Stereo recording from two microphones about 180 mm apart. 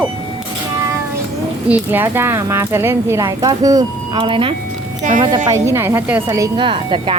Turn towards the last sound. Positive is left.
turn(degrees=-30)  # may be behind; listen again after turning